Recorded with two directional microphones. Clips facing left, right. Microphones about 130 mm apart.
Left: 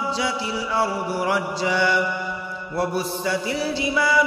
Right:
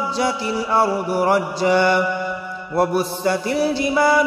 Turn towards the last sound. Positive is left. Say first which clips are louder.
# right 5 dB
turn(degrees=-50)  # may be behind; listen again after turning